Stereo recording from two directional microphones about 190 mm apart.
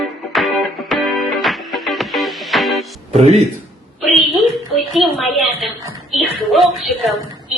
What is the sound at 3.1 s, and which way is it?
Speech, 35° right (ahead or behind).